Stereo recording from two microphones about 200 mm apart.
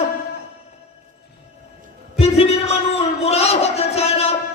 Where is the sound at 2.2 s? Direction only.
30° left (ahead or behind).